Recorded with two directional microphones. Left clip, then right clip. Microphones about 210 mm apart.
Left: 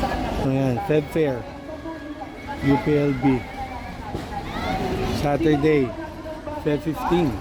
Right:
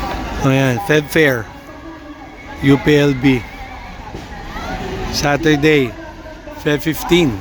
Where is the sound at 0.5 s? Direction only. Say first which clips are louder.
Right 8 dB; centre (ahead or behind).